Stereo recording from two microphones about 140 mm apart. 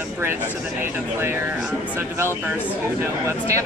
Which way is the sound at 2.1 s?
20° right (ahead or behind).